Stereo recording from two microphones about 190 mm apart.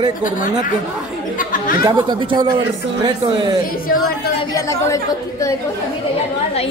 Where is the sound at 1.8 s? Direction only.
20° right (ahead or behind).